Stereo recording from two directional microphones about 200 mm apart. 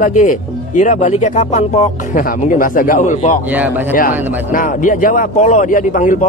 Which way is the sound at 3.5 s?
10° right (ahead or behind).